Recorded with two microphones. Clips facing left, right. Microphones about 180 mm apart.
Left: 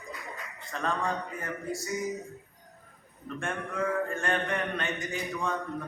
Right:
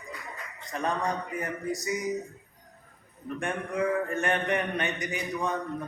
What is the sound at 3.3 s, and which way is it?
A man's voice, 15° right (ahead or behind).